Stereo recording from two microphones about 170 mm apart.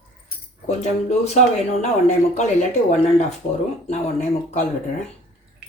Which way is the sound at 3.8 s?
40° left (ahead or behind).